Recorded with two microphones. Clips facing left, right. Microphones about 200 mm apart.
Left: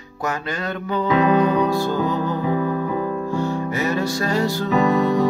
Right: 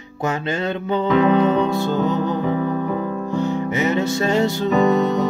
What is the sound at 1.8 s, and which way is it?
Music, 20° right (ahead or behind).